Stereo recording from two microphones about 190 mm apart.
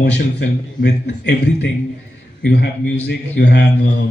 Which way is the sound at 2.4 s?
60° left (ahead or behind).